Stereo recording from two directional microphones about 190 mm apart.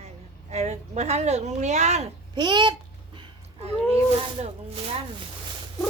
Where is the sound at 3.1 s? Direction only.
30° right (ahead or behind).